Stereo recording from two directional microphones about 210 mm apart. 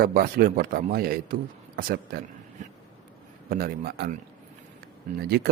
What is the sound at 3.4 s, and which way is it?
Speech, 45° right (ahead or behind).